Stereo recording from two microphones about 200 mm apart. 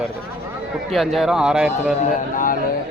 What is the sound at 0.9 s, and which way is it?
Speech, centre (ahead or behind).